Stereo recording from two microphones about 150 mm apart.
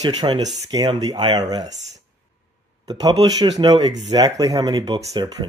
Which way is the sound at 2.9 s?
25° right (ahead or behind).